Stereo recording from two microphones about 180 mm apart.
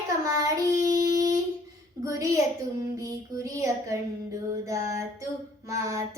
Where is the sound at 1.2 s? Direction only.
20° right (ahead or behind).